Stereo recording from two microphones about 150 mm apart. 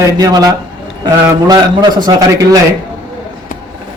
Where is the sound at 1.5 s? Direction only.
25° right (ahead or behind).